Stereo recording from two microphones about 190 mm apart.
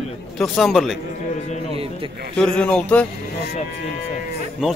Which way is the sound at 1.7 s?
30° right (ahead or behind).